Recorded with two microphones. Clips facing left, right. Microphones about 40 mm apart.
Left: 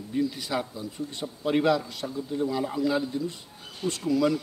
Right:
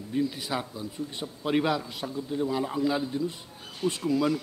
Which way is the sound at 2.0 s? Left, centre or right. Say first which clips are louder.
Right 1 dB; centre.